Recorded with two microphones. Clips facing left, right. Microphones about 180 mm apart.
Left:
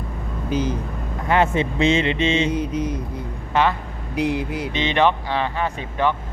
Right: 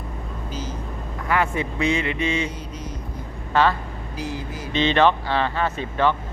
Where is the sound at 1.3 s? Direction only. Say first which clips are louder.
Left 4 dB; 25° left (ahead or behind).